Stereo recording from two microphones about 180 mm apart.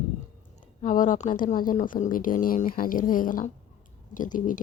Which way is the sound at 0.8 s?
45° left (ahead or behind).